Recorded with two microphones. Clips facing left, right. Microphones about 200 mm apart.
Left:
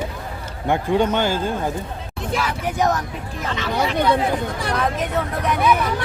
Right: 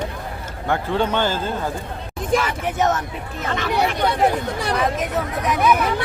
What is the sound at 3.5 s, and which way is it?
Speech, 55° right (ahead or behind).